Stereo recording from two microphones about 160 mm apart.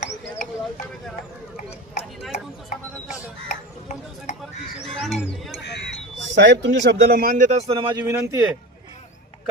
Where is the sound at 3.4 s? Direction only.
45° left (ahead or behind).